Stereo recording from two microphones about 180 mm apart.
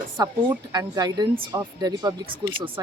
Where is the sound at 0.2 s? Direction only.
20° right (ahead or behind).